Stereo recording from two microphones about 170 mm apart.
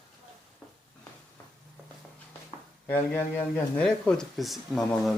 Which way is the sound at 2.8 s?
10° left (ahead or behind).